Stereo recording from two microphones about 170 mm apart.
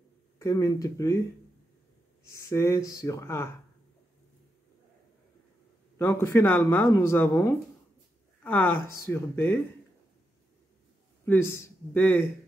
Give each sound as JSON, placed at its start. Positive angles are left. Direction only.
{"t": 0.4, "sound": "speech", "side_deg": 20}
{"t": 2.3, "sound": "speech", "side_deg": 15}
{"t": 5.9, "sound": "speech", "side_deg": 15}
{"t": 11.2, "sound": "speech", "side_deg": 15}